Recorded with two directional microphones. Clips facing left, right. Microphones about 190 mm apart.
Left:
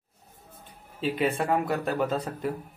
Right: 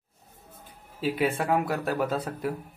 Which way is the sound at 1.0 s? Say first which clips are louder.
Even; 5° right (ahead or behind).